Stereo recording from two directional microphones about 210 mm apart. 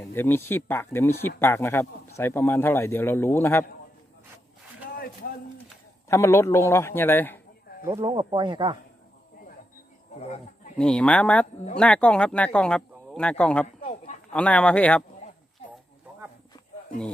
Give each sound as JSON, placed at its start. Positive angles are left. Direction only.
{"t": 0.1, "sound": "speech", "side_deg": 10}
{"t": 6.1, "sound": "speech", "side_deg": 15}
{"t": 7.9, "sound": "speech", "side_deg": -20}
{"t": 10.2, "sound": "speech", "side_deg": 30}
{"t": 10.8, "sound": "speech", "side_deg": 5}
{"t": 13.8, "sound": "a sound", "side_deg": 30}
{"t": 14.3, "sound": "speech", "side_deg": 5}